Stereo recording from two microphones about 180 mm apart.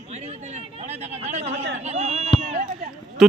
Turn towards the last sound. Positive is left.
turn(degrees=0)  # may be behind; listen again after turning